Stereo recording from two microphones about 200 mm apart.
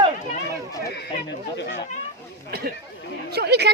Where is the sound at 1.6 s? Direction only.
60° left (ahead or behind).